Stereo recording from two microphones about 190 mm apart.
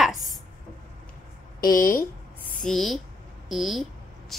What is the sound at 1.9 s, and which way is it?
Writing, 15° left (ahead or behind).